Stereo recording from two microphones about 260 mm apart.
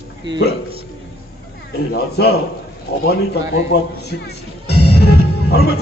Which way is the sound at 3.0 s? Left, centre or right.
Left.